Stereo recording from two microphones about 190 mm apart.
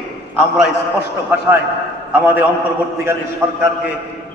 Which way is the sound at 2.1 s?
10° right (ahead or behind).